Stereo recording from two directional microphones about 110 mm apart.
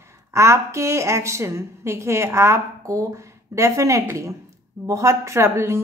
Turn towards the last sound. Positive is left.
turn(degrees=-25)  # may be behind; listen again after turning